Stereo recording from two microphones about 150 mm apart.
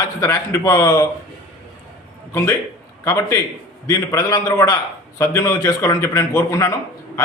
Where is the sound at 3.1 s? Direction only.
20° left (ahead or behind).